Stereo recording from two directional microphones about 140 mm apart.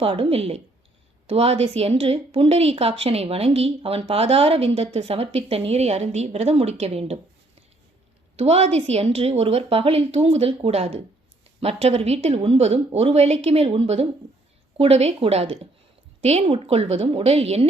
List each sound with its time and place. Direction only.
0.0 s a woman's voice: 45° right (ahead or behind)
8.4 s a woman's voice: 45° right (ahead or behind)